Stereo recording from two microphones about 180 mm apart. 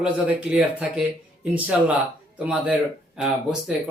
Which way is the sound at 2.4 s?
5° right (ahead or behind).